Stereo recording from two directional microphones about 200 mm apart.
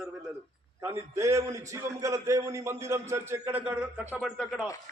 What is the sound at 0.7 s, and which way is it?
A man's voice, 15° right (ahead or behind).